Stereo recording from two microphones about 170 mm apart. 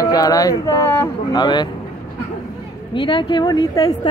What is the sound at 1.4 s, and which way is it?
Speech, 25° left (ahead or behind).